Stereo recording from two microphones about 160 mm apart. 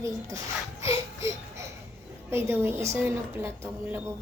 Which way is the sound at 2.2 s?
15° right (ahead or behind).